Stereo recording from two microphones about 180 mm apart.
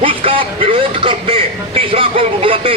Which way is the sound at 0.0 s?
30° right (ahead or behind).